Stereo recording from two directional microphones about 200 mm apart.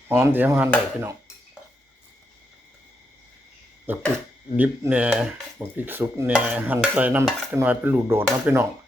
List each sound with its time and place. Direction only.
0.1 s speech: 10° right (ahead or behind)
3.9 s speech: 10° right (ahead or behind)